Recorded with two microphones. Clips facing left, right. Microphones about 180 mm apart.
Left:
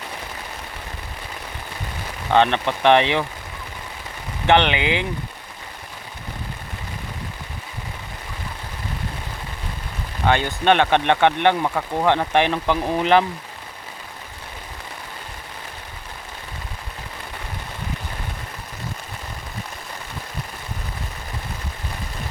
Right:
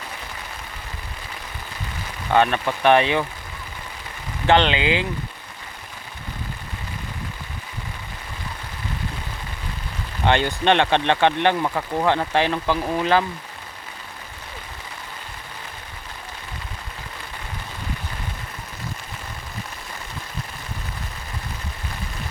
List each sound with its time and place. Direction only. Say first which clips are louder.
2.3 s speech: left 1 dB; 20° left (ahead or behind)
4.4 s speech: even; 20° left (ahead or behind)
10.3 s speech: left 1 dB; 10° left (ahead or behind)